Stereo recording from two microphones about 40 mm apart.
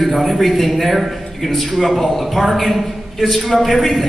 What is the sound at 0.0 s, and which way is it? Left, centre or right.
A man's voice, centre.